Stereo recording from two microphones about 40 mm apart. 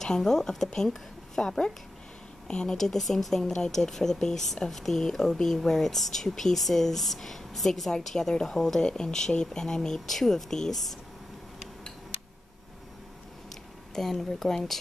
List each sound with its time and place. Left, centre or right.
0.0 s a woman's voice: centre
2.8 s speech: centre
13.9 s speech: centre